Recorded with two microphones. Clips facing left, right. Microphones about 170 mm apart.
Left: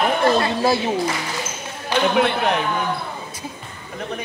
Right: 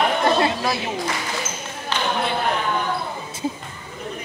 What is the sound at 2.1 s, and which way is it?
Speech, 80° left.